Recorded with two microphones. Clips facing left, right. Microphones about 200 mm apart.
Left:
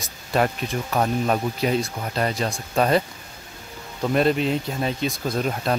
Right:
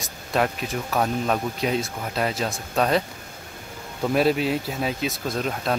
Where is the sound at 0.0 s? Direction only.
Centre (ahead or behind).